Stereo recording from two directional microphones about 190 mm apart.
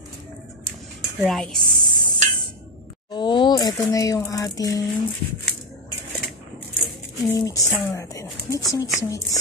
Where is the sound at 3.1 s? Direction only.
25° left (ahead or behind).